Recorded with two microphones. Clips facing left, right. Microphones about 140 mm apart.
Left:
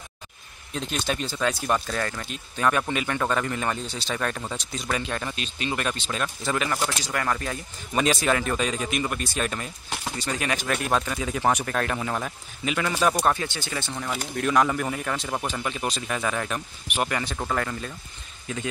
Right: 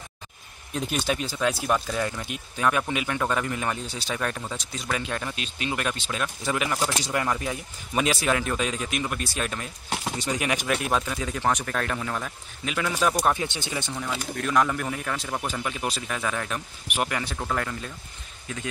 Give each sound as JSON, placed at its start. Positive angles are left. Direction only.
{"t": 0.7, "sound": "speech", "side_deg": -5}
{"t": 7.0, "sound": "speech", "side_deg": -20}
{"t": 9.8, "sound": "speech", "side_deg": -20}
{"t": 10.7, "sound": "speech", "side_deg": 0}
{"t": 12.7, "sound": "speech", "side_deg": 0}
{"t": 13.3, "sound": "speech", "side_deg": -15}
{"t": 13.9, "sound": "speech", "side_deg": 5}